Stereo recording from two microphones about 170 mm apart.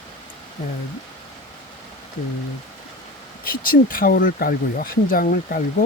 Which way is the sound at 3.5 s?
60° left (ahead or behind).